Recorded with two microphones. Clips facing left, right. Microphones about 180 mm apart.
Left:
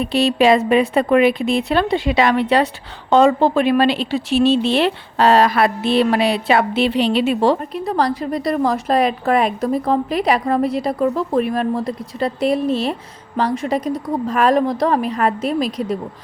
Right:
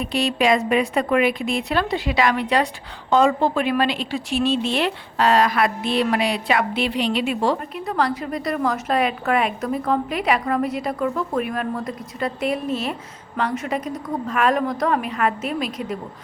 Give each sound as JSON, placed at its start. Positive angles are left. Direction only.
{"t": 0.0, "sound": "a woman's voice", "side_deg": 30}